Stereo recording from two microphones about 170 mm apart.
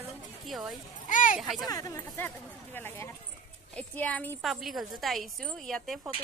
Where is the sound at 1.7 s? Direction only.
20° left (ahead or behind).